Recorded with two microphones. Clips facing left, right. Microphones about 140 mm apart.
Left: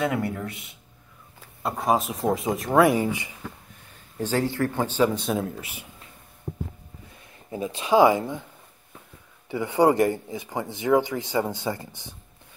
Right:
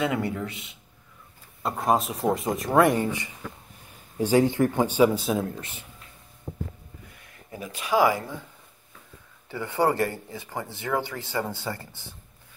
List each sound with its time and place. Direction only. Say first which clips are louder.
0.0 s speech: even; centre (ahead or behind)
4.2 s speech: right 4 dB; 15° right (ahead or behind)
7.5 s speech: left 4 dB; 25° left (ahead or behind)
9.5 s a man's voice: left 4 dB; 15° left (ahead or behind)